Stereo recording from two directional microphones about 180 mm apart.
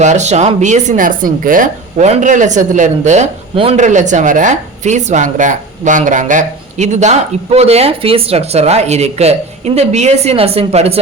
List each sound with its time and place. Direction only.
0.0 s speech: 40° right (ahead or behind)